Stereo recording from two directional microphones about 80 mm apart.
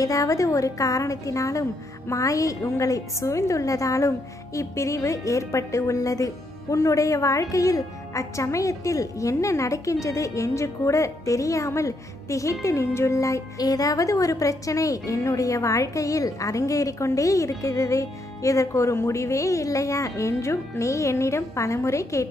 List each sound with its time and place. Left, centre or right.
0.0 s a woman's voice: left